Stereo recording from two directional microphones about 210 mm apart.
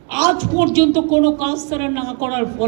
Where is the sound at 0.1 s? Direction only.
35° right (ahead or behind).